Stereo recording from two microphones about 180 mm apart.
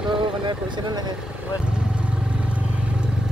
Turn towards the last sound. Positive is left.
turn(degrees=-5)  # may be behind; listen again after turning